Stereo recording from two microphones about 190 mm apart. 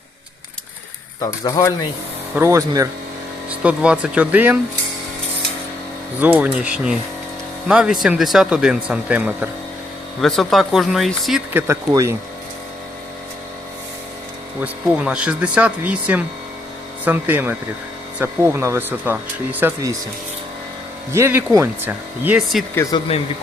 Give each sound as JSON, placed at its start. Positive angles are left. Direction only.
{"t": 1.2, "sound": "speech", "side_deg": 15}
{"t": 2.3, "sound": "speech", "side_deg": -15}
{"t": 6.1, "sound": "speech", "side_deg": -10}
{"t": 11.7, "sound": "speech", "side_deg": -15}
{"t": 14.6, "sound": "speech", "side_deg": -5}
{"t": 21.1, "sound": "speech", "side_deg": -15}
{"t": 22.7, "sound": "speech", "side_deg": 15}